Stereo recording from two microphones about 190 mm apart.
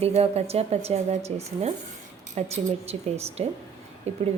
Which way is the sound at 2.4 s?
35° right (ahead or behind).